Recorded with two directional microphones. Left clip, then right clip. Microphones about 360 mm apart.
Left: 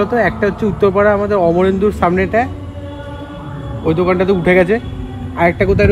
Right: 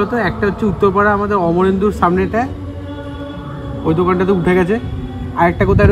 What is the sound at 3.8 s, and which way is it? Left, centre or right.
Speech, centre.